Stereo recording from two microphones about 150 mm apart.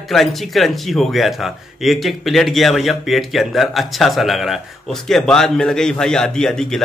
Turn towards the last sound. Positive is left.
turn(degrees=5)  # may be behind; listen again after turning